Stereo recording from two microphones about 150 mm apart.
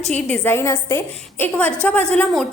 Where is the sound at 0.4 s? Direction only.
15° left (ahead or behind).